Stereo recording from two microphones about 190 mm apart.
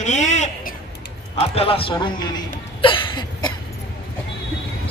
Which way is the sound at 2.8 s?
25° left (ahead or behind).